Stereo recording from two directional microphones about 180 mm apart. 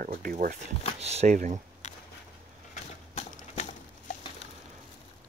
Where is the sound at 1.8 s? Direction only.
40° left (ahead or behind).